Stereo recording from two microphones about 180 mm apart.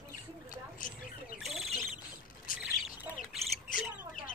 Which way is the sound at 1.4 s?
Centre (ahead or behind).